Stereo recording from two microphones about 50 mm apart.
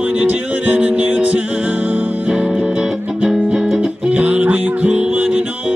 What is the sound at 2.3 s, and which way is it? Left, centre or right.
Music, centre.